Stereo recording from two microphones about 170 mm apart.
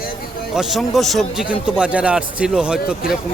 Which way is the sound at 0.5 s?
Centre (ahead or behind).